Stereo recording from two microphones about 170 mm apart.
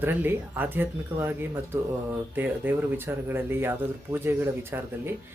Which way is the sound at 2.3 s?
10° right (ahead or behind).